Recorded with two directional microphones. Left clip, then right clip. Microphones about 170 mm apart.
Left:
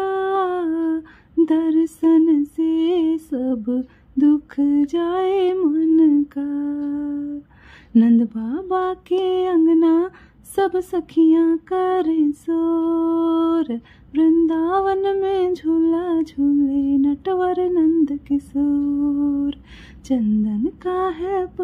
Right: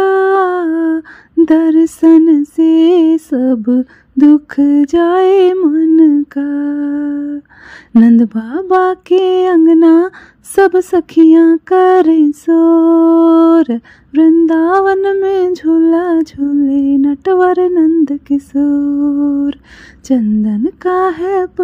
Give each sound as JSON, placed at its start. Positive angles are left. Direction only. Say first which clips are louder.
{"t": 0.0, "sound": "humming", "louder": "right 10 dB", "side_deg": -35}
{"t": 5.7, "sound": "speech", "louder": "right 7 dB", "side_deg": -30}
{"t": 18.9, "sound": "humming", "louder": "right 7 dB", "side_deg": -30}
{"t": 20.4, "sound": "speech", "louder": "right 9 dB", "side_deg": -30}